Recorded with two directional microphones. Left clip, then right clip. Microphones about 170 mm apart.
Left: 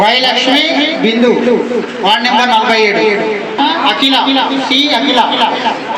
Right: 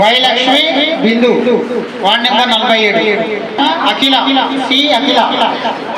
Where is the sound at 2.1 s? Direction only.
45° right (ahead or behind).